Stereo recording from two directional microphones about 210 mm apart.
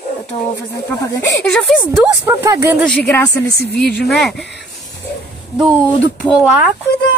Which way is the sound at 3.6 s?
50° left (ahead or behind).